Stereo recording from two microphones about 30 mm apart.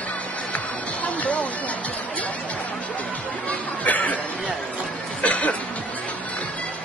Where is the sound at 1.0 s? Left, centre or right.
Left.